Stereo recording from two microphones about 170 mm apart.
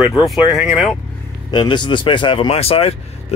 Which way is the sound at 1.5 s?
25° left (ahead or behind).